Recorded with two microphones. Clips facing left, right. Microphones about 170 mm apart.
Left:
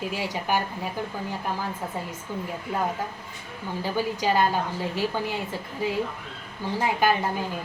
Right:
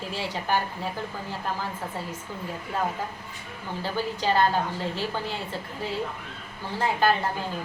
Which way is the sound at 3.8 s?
10° left (ahead or behind).